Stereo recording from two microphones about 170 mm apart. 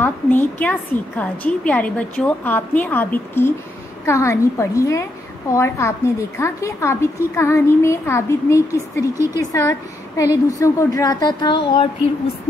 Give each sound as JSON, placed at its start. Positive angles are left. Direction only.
{"t": 0.0, "sound": "a woman's voice", "side_deg": 10}